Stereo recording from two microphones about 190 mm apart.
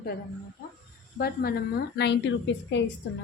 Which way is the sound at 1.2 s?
55° left (ahead or behind).